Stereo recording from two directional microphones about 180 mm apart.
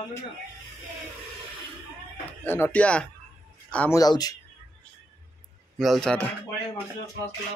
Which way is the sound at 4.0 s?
20° left (ahead or behind).